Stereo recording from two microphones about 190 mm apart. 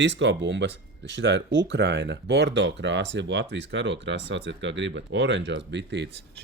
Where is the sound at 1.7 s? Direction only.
65° right (ahead or behind).